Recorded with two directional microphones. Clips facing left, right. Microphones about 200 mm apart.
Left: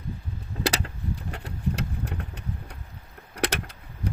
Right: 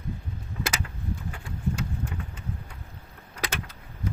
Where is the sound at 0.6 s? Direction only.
35° left (ahead or behind).